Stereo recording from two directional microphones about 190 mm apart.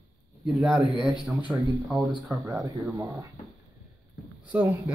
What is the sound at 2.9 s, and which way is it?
Speech, 15° right (ahead or behind).